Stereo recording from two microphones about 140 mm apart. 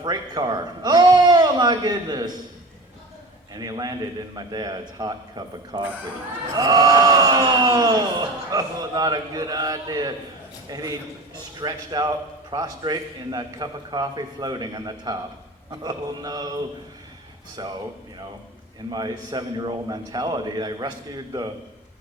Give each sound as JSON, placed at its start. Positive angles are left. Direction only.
{"t": 0.0, "sound": "a man's voice", "side_deg": -30}
{"t": 3.5, "sound": "a man's voice", "side_deg": -30}
{"t": 17.6, "sound": "a man's voice", "side_deg": -30}
{"t": 18.9, "sound": "a man's voice", "side_deg": -30}